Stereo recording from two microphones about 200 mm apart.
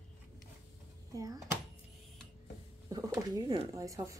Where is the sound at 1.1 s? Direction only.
15° right (ahead or behind).